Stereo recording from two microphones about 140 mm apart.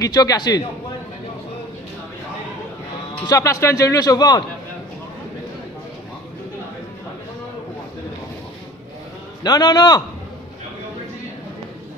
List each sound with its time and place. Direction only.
0.0 s a man's voice: 25° left (ahead or behind)
3.3 s a man's voice: 25° left (ahead or behind)
9.4 s a man's voice: 30° left (ahead or behind)